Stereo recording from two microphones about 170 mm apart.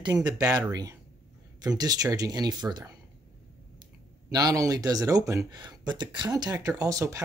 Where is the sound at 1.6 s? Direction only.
20° right (ahead or behind).